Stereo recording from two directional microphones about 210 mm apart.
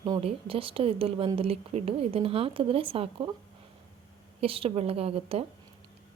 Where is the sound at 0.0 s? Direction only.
25° right (ahead or behind).